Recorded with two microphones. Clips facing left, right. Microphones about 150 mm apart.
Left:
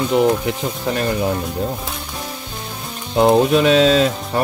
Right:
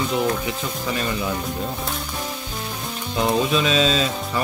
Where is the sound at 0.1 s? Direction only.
65° left (ahead or behind).